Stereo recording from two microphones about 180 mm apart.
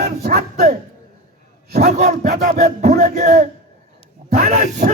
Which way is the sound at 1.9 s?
45° right (ahead or behind).